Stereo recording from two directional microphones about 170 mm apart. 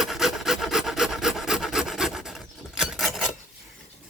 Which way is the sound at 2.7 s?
Centre (ahead or behind).